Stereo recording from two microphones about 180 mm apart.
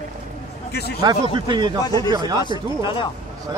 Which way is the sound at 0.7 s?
65° left (ahead or behind).